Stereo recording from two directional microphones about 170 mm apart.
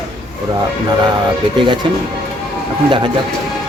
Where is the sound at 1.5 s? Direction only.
30° right (ahead or behind).